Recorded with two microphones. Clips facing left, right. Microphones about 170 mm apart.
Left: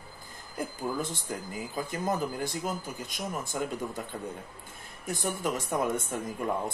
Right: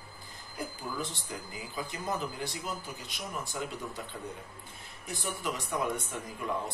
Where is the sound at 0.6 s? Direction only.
50° left (ahead or behind).